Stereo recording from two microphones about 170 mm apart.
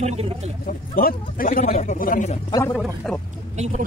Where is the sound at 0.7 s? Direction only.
60° left (ahead or behind).